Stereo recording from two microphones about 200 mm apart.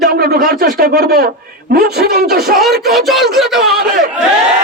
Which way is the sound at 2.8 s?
Centre (ahead or behind).